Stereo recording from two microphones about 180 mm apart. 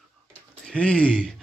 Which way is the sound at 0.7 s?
5° left (ahead or behind).